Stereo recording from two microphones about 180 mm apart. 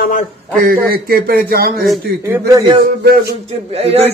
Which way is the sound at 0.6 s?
55° right (ahead or behind).